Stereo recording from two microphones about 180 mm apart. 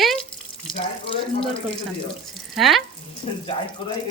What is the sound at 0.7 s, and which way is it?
Speech, 30° left (ahead or behind).